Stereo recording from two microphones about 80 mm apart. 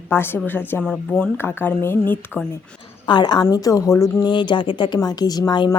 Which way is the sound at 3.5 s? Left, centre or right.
Left.